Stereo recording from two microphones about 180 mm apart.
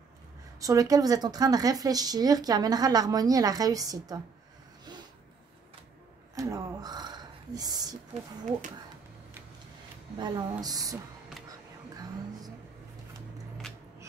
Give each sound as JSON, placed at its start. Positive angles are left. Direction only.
{"t": 0.6, "sound": "speech", "side_deg": -20}
{"t": 6.3, "sound": "speech", "side_deg": -20}
{"t": 10.1, "sound": "speech", "side_deg": -25}